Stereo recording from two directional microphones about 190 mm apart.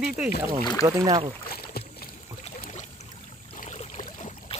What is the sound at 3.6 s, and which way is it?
Boat, 35° left (ahead or behind).